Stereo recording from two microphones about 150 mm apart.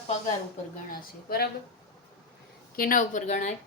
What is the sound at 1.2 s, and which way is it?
Speech, 90° left.